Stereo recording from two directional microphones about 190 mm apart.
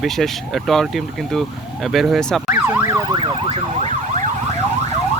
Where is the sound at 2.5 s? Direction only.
15° right (ahead or behind).